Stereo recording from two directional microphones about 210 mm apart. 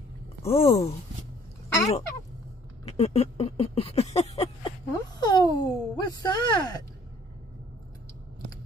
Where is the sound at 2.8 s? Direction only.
30° left (ahead or behind).